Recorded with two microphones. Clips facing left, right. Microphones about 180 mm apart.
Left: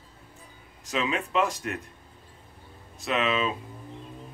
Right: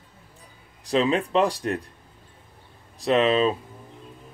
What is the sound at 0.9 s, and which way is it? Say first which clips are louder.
Speech: right 7 dB; 35° right (ahead or behind).